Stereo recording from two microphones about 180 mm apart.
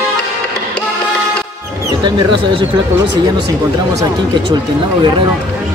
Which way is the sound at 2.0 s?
25° right (ahead or behind).